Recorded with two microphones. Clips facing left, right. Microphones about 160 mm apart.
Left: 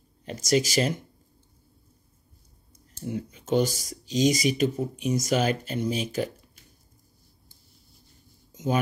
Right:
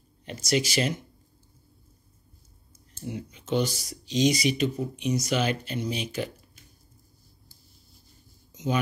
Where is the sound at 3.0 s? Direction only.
45° left (ahead or behind).